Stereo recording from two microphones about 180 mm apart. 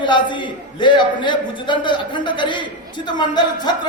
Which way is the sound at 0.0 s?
25° left (ahead or behind).